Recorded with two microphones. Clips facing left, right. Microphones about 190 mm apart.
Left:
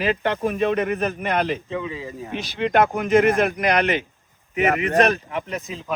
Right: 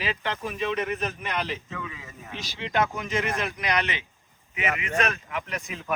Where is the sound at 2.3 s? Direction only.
60° left (ahead or behind).